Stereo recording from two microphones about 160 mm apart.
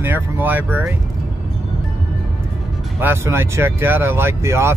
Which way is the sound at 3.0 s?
15° right (ahead or behind).